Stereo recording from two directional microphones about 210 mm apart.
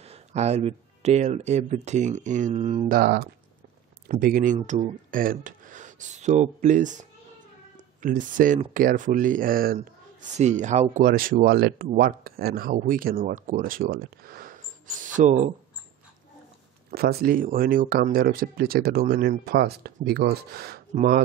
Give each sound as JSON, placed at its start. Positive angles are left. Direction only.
{"t": 0.0, "sound": "speech", "side_deg": -30}
{"t": 2.9, "sound": "speech", "side_deg": -45}
{"t": 16.9, "sound": "speech", "side_deg": -45}